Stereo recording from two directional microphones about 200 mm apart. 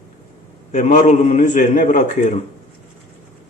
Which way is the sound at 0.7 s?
35° left (ahead or behind).